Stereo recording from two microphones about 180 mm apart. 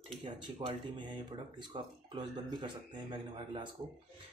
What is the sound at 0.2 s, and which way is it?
Speech, 30° right (ahead or behind).